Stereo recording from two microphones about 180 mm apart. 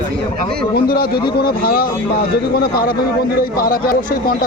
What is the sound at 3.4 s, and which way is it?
Speech, 55° left (ahead or behind).